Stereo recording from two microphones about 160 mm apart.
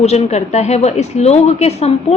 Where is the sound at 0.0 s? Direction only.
45° left (ahead or behind).